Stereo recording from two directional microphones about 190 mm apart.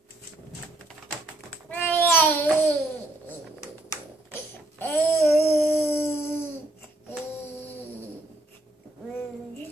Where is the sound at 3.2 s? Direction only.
15° left (ahead or behind).